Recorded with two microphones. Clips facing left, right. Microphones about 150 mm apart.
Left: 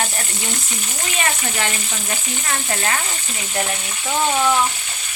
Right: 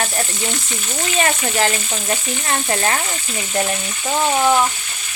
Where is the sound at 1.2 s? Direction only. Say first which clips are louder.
Right 5 dB; 35° right (ahead or behind).